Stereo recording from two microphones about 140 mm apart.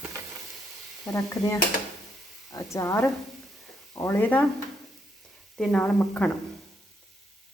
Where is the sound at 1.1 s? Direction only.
25° left (ahead or behind).